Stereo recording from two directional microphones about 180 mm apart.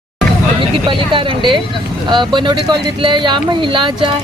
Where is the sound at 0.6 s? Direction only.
30° right (ahead or behind).